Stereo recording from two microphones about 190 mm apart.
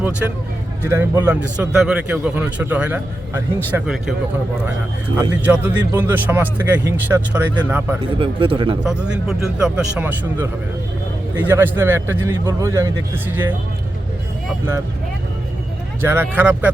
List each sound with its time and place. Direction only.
0.9 s a man's voice: 10° right (ahead or behind)
5.1 s a man's voice: 10° right (ahead or behind)
8.2 s speech: 30° right (ahead or behind)
8.8 s a man's voice: 5° right (ahead or behind)
16.0 s a man's voice: 10° right (ahead or behind)